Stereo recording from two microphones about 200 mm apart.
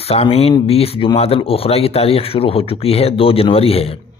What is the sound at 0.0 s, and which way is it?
Speech, 30° left (ahead or behind).